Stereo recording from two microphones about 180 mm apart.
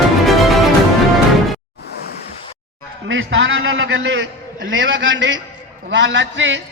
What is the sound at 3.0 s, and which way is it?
A man's voice, 90° right.